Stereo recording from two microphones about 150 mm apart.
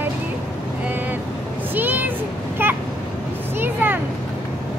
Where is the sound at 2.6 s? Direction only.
15° right (ahead or behind).